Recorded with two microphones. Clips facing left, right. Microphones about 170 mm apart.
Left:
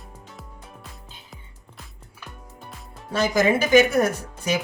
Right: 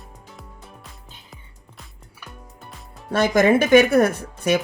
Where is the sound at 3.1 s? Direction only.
55° right (ahead or behind).